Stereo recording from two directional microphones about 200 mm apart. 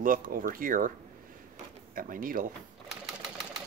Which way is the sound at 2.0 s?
45° right (ahead or behind).